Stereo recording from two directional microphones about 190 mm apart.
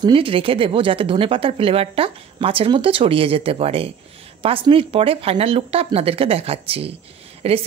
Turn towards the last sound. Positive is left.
turn(degrees=-30)  # may be behind; listen again after turning